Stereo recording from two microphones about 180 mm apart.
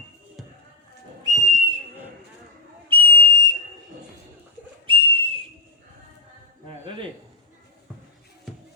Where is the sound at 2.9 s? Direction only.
30° right (ahead or behind).